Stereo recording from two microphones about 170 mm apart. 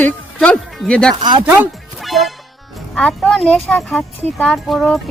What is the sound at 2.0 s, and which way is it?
Music, centre (ahead or behind).